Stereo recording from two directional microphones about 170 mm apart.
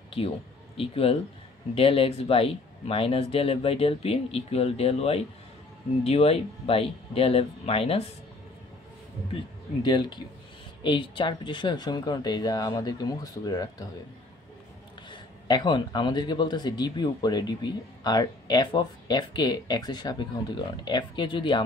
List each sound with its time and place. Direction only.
0.7 s speech: 35° left (ahead or behind)
9.8 s speech: 25° left (ahead or behind)
15.0 s speech: 25° left (ahead or behind)